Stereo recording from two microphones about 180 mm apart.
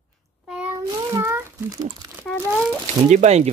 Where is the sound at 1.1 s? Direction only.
15° right (ahead or behind).